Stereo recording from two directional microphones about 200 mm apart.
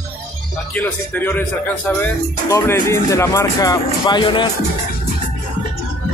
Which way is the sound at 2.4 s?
15° left (ahead or behind).